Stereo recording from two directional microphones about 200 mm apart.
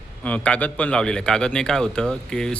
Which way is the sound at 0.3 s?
5° left (ahead or behind).